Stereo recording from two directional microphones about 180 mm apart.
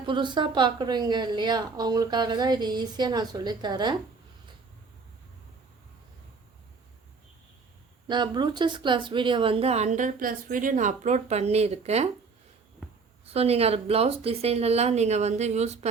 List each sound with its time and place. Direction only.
0.0 s a woman's voice: 25° right (ahead or behind)
8.0 s speech: 25° right (ahead or behind)
12.8 s a sound: 5° left (ahead or behind)
13.3 s speech: 35° right (ahead or behind)